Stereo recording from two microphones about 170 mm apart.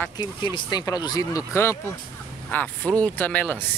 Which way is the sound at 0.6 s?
25° left (ahead or behind).